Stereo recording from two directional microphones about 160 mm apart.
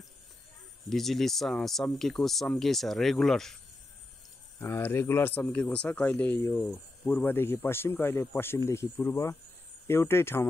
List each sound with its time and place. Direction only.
0.8 s speech: centre (ahead or behind)
4.6 s speech: 15° left (ahead or behind)